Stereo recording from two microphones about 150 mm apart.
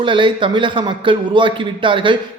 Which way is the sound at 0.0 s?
35° right (ahead or behind).